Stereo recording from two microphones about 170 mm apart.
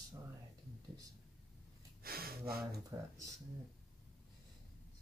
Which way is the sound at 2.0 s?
60° right (ahead or behind).